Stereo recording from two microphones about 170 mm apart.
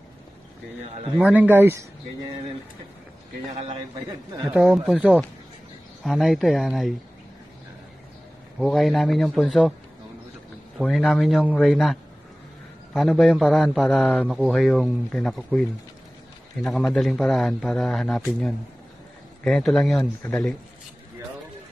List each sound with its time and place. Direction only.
1.1 s speech: 10° right (ahead or behind)
4.1 s speech: 20° right (ahead or behind)
4.8 s a man's voice: 5° right (ahead or behind)
8.5 s a man's voice: centre (ahead or behind)
10.8 s a man's voice: centre (ahead or behind)
16.6 s a man's voice: centre (ahead or behind)
19.4 s a man's voice: 5° left (ahead or behind)